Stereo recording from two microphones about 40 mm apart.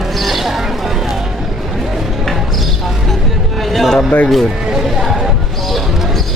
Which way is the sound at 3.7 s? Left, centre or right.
Centre.